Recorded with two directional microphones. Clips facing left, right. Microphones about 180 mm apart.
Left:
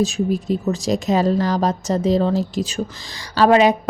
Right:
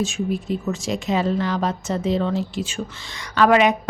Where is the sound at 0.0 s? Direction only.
40° left (ahead or behind).